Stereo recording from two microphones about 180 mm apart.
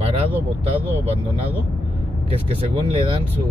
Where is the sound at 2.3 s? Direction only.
30° right (ahead or behind).